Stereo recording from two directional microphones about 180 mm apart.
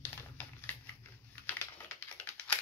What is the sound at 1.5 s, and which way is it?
Typing, 10° left (ahead or behind).